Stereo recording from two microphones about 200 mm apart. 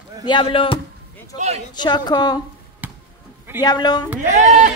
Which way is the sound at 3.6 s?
20° left (ahead or behind).